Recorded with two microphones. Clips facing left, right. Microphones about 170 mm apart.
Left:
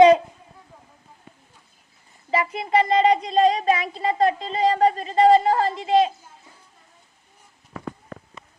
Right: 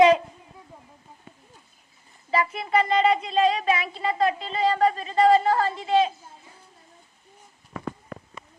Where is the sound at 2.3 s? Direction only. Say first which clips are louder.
Left 2 dB; 25° left (ahead or behind).